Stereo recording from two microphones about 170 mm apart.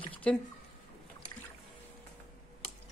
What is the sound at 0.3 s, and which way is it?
Speech, 5° left (ahead or behind).